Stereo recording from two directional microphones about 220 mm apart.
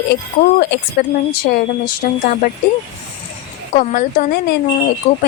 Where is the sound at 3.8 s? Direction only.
40° left (ahead or behind).